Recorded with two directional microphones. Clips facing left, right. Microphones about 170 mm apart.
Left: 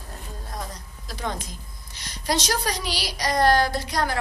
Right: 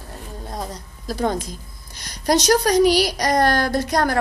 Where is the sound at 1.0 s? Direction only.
40° right (ahead or behind).